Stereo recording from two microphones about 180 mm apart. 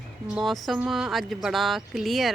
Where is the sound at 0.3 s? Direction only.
Centre (ahead or behind).